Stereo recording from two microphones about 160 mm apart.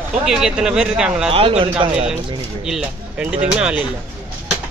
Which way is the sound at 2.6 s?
5° right (ahead or behind).